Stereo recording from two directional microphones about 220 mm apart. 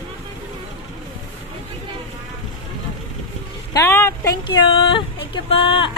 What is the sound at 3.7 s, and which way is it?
Speech, 15° left (ahead or behind).